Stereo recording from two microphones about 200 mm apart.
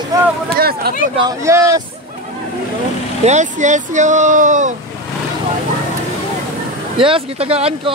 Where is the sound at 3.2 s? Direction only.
35° right (ahead or behind).